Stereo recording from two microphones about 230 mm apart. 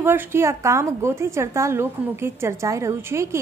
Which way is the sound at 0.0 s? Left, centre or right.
Centre.